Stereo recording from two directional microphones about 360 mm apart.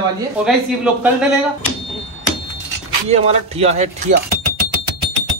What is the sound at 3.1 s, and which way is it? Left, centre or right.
A man's voice, centre.